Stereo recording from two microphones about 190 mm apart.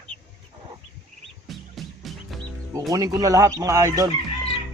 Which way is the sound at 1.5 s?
Centre (ahead or behind).